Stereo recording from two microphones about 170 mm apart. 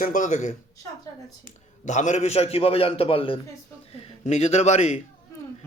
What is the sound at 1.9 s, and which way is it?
A man's voice, 45° left (ahead or behind).